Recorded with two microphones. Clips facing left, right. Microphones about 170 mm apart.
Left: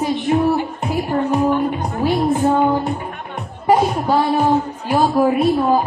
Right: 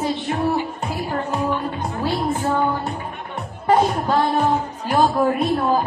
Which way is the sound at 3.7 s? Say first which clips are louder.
Left 2 dB; 10° left (ahead or behind).